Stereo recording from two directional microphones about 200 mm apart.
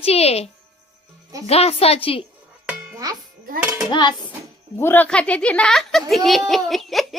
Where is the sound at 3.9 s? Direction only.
20° left (ahead or behind).